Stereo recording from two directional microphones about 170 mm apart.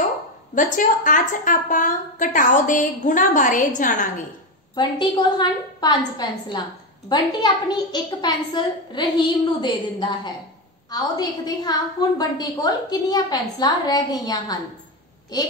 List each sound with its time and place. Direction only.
0.6 s a woman's voice: 50° left (ahead or behind)
4.7 s a woman's voice: 25° left (ahead or behind)